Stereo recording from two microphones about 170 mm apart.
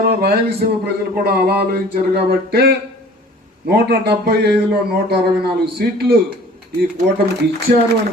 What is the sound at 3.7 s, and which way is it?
Speech, 70° right (ahead or behind).